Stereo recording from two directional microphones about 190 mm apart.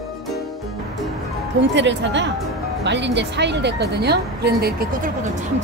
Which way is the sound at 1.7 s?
70° right (ahead or behind).